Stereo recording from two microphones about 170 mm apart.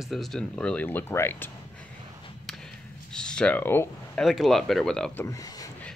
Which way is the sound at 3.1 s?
5° left (ahead or behind).